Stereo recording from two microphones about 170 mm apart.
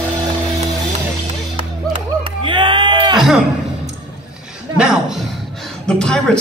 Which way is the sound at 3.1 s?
Centre (ahead or behind).